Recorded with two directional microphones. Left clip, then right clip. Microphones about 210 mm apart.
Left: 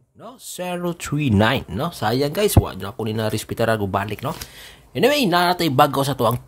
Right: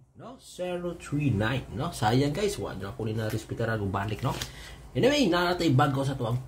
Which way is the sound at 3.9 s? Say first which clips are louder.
Left 8 dB; 25° left (ahead or behind).